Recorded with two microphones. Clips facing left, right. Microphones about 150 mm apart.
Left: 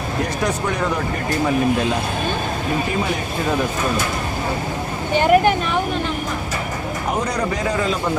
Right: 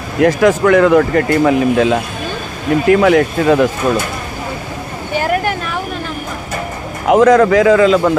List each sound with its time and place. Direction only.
0.2 s speech: 90° right
7.1 s speech: 90° right